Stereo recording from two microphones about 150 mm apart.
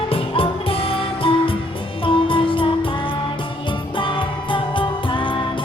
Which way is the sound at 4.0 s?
35° left (ahead or behind).